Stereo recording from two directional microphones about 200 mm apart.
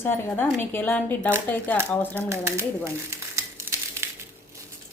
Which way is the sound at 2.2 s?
15° right (ahead or behind).